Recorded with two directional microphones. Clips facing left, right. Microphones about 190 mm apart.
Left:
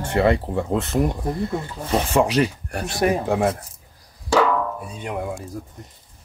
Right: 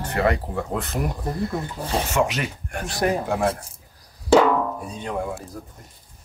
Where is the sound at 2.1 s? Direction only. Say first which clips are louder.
Left 7 dB; 35° left (ahead or behind).